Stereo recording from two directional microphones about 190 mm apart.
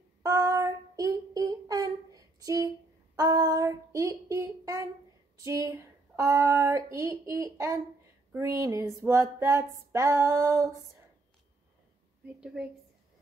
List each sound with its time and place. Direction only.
0.2 s child singing: 20° right (ahead or behind)
3.2 s a sound: 20° right (ahead or behind)
5.4 s speech: 15° right (ahead or behind)
12.4 s a woman's voice: 5° right (ahead or behind)